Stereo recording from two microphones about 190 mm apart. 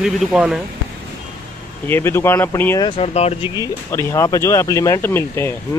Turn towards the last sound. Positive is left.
turn(degrees=10)  # may be behind; listen again after turning